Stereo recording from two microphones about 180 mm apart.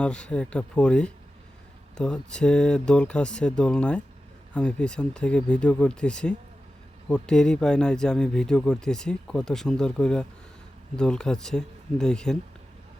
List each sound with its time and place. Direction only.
0.0 s speech: 5° left (ahead or behind)